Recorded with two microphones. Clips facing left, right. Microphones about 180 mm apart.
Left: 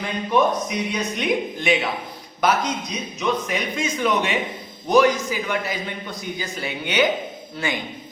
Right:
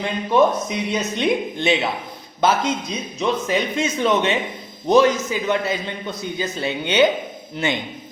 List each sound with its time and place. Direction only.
0.3 s speech: 25° right (ahead or behind)